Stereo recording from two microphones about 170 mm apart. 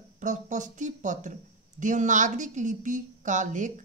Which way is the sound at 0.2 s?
45° right (ahead or behind).